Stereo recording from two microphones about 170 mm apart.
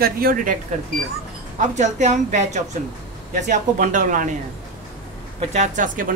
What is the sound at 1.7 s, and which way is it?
Speech, 45° right (ahead or behind).